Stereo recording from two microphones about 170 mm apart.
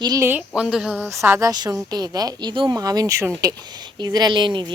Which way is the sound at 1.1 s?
15° right (ahead or behind).